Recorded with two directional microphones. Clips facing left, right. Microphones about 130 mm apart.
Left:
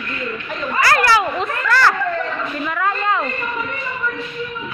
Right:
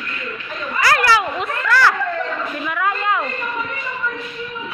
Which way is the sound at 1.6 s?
Centre (ahead or behind).